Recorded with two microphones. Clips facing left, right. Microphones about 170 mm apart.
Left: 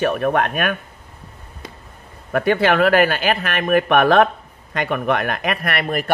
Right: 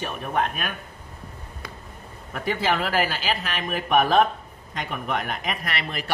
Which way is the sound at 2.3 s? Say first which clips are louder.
Left 8 dB; 70° left (ahead or behind).